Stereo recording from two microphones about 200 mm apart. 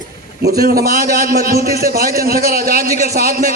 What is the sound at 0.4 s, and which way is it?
A man's voice, 50° right (ahead or behind).